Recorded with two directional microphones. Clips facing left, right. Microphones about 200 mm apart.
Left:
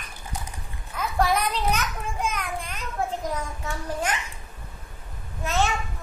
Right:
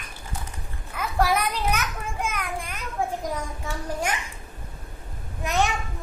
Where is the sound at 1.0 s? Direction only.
10° right (ahead or behind).